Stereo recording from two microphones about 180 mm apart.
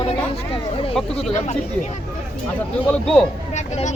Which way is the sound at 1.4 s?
40° left (ahead or behind).